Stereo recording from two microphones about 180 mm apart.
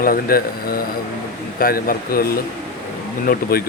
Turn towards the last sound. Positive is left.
turn(degrees=50)  # may be behind; listen again after turning